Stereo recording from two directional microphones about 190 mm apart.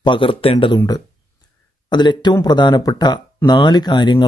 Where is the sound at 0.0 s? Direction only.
25° left (ahead or behind).